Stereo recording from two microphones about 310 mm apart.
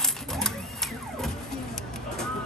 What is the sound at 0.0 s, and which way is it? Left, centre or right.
Printer, centre.